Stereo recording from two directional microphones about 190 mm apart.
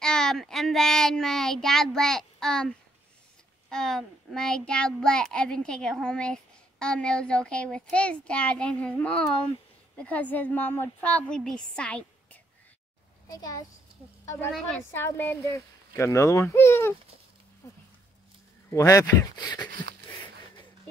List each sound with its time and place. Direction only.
0.0 s child singing: 5° left (ahead or behind)
3.7 s a child's voice: centre (ahead or behind)
13.3 s a woman's voice: 20° left (ahead or behind)
18.7 s speech: 15° left (ahead or behind)